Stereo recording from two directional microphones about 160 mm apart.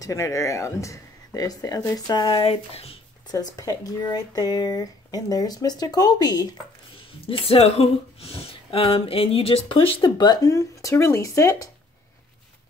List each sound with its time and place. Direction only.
0.0 s speech: 20° left (ahead or behind); by 3.0 s 40° left (ahead or behind)
3.3 s speech: 25° left (ahead or behind)
7.2 s speech: 35° left (ahead or behind); by 11.7 s 20° left (ahead or behind)